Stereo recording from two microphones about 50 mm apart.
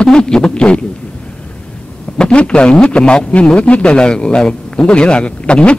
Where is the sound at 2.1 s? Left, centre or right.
Centre.